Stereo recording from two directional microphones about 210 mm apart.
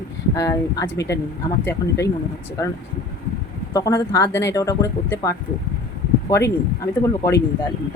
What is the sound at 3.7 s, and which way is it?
Speech, 15° left (ahead or behind).